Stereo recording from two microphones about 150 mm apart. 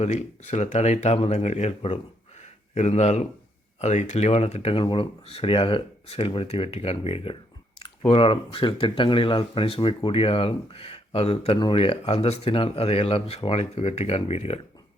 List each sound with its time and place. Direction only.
0.0 s speech: 50° left (ahead or behind)
2.4 s a sound: 50° left (ahead or behind)
3.8 s speech: 50° left (ahead or behind)